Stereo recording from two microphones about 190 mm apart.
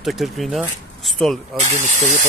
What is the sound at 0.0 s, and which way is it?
Speech, centre (ahead or behind).